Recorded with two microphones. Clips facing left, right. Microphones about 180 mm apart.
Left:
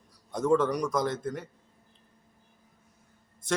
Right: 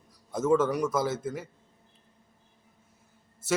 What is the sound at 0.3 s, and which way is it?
A man's voice, 5° right (ahead or behind).